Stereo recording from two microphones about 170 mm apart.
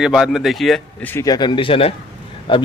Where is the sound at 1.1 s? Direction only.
20° left (ahead or behind).